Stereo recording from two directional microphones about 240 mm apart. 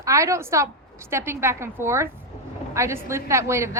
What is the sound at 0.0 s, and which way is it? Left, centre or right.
A woman's voice, centre.